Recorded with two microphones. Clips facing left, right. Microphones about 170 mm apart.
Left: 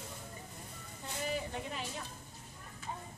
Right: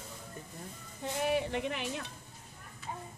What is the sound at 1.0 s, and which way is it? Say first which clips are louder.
Speech: right 7 dB; 70° right (ahead or behind).